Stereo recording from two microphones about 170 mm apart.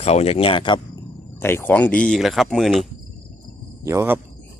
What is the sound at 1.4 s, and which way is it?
Speech, 15° left (ahead or behind).